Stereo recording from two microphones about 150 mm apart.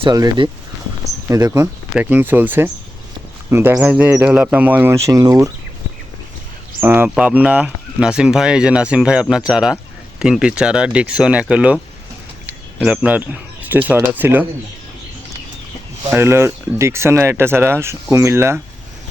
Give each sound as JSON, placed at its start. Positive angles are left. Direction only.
{"t": 0.0, "sound": "speech", "side_deg": -30}
{"t": 6.8, "sound": "speech", "side_deg": -15}
{"t": 16.0, "sound": "speech", "side_deg": -15}